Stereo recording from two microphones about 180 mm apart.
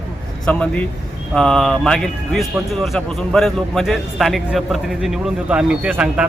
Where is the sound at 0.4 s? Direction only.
5° left (ahead or behind).